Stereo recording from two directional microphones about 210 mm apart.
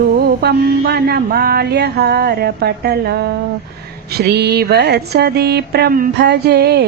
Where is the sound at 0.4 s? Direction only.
50° right (ahead or behind).